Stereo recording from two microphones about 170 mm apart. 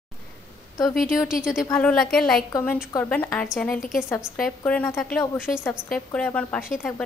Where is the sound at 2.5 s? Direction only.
15° left (ahead or behind).